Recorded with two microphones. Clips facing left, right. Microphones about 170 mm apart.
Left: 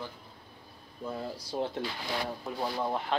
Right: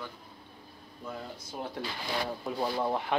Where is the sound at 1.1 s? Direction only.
30° left (ahead or behind).